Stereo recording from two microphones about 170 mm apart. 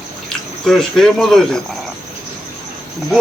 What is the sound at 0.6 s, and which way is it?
Speech, centre (ahead or behind).